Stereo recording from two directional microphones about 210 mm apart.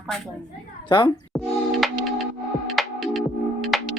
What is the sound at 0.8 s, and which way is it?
Speech, 25° left (ahead or behind).